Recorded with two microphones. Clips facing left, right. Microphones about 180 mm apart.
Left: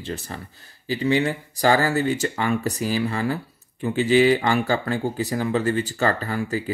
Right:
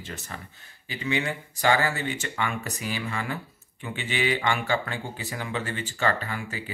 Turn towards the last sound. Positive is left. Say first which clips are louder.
# left 9 dB
turn(degrees=40)  # may be behind; listen again after turning